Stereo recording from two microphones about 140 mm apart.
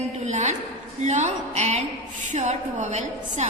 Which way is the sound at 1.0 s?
55° right (ahead or behind).